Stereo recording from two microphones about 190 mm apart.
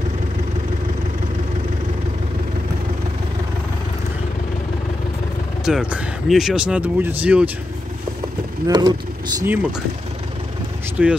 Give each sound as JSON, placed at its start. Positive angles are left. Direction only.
{"t": 5.7, "sound": "speech", "side_deg": -5}
{"t": 8.6, "sound": "speech", "side_deg": -20}
{"t": 9.4, "sound": "speech", "side_deg": -5}
{"t": 11.0, "sound": "speech", "side_deg": -5}